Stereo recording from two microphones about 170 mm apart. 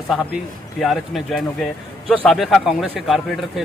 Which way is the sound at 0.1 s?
Centre (ahead or behind).